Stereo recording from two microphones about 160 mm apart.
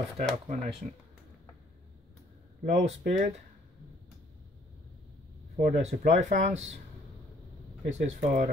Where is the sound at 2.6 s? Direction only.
50° right (ahead or behind).